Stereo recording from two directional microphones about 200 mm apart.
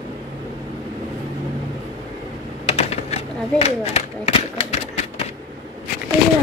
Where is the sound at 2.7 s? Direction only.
30° left (ahead or behind).